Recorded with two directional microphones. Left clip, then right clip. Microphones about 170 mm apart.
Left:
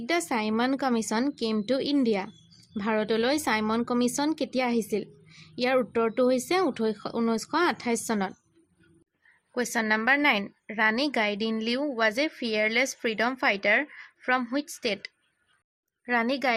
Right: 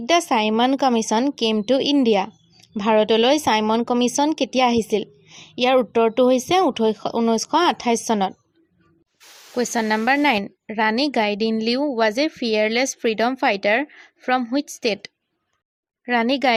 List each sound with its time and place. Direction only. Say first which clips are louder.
0.0 s a woman's voice: right 10 dB; 30° right (ahead or behind)
9.6 s a woman's voice: right 5 dB; 35° right (ahead or behind)